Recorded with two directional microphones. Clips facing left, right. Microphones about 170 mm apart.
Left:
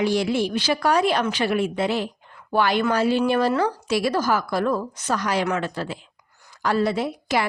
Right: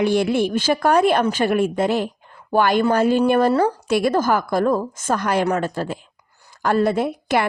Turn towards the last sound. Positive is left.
turn(degrees=-55)  # may be behind; listen again after turning